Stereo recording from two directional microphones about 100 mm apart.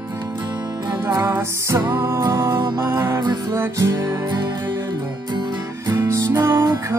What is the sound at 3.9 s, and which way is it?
Music, 45° right (ahead or behind).